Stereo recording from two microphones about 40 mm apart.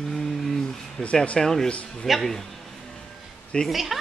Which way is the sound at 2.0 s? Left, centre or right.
Centre.